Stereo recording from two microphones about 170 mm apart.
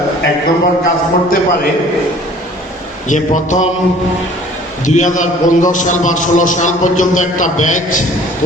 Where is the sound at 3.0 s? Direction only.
50° left (ahead or behind).